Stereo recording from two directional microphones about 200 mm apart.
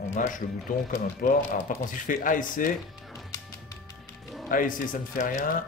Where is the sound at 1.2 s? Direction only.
45° left (ahead or behind).